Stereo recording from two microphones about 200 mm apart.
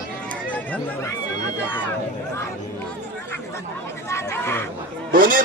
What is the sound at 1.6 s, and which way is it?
Speech, 10° left (ahead or behind).